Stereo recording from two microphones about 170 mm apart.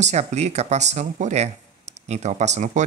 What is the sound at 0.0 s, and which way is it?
Speech, 40° right (ahead or behind).